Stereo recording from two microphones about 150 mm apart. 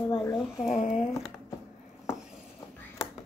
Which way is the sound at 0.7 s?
45° left (ahead or behind).